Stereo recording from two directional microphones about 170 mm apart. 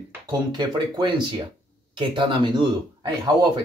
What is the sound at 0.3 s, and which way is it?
Speech, 25° right (ahead or behind).